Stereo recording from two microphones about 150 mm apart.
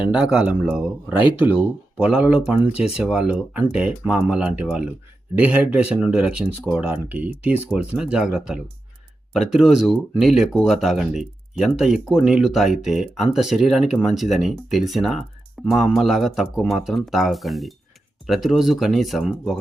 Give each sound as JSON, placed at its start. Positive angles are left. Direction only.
{"t": 0.0, "sound": "speech", "side_deg": -5}